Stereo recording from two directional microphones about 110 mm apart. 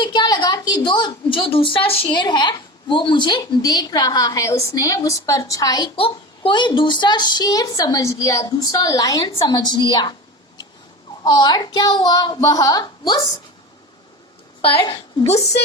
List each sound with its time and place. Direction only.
0.0 s a woman's voice: 45° left (ahead or behind)
6.0 s a woman's voice: 50° left (ahead or behind)
11.3 s a woman's voice: 40° left (ahead or behind)
14.6 s a woman's voice: 60° left (ahead or behind)